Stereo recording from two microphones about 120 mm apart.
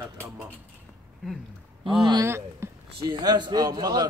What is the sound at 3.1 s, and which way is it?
A man's voice, 35° right (ahead or behind).